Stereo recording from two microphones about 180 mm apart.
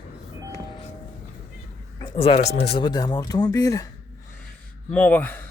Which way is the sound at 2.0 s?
30° left (ahead or behind).